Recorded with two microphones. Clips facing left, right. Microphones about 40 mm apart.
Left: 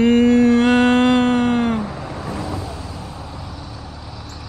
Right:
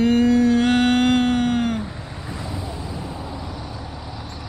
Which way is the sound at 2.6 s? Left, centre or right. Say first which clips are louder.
Even; right.